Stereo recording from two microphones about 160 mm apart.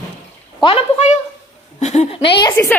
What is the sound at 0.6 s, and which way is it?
A woman's voice, 40° left (ahead or behind).